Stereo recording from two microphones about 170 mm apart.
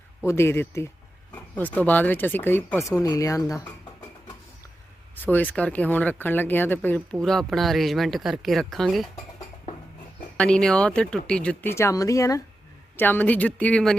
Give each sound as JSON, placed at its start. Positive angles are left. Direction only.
{"t": 0.2, "sound": "speech", "side_deg": 15}
{"t": 5.1, "sound": "speech", "side_deg": 10}
{"t": 10.3, "sound": "speech", "side_deg": 5}